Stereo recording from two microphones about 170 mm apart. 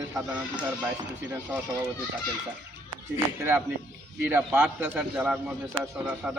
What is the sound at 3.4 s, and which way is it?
Speech, 15° right (ahead or behind).